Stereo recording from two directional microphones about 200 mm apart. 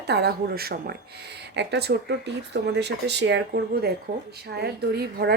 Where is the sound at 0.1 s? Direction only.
55° right (ahead or behind).